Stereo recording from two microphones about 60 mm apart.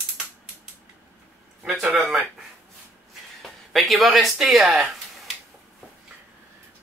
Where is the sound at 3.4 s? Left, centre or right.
Centre.